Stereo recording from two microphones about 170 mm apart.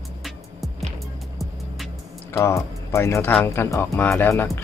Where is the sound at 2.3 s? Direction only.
15° left (ahead or behind).